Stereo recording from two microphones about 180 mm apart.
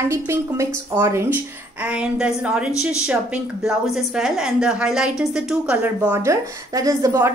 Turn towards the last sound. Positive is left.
turn(degrees=-20)  # may be behind; listen again after turning